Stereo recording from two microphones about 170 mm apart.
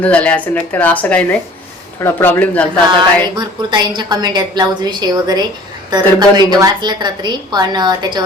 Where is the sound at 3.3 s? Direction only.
25° right (ahead or behind).